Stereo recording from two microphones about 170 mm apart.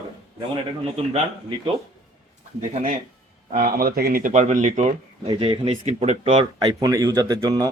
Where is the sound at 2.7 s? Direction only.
50° right (ahead or behind).